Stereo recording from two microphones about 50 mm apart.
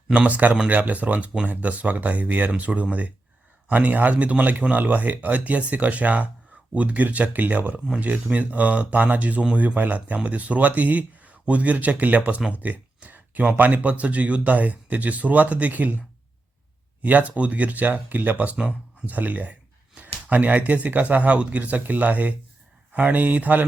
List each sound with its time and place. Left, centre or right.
0.1 s speech: right
12.5 s a sound: right
13.6 s speech: right
17.0 s speech: right